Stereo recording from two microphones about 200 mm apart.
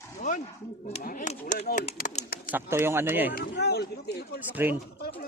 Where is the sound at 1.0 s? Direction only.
40° left (ahead or behind).